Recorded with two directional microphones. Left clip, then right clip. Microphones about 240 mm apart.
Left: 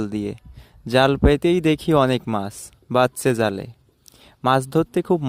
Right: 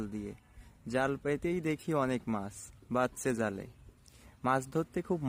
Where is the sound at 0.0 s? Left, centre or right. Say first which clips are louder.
Left 15 dB; left.